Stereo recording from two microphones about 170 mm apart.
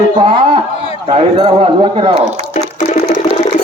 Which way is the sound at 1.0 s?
25° right (ahead or behind).